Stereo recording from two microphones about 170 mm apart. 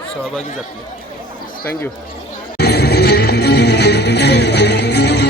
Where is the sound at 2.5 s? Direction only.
70° left (ahead or behind).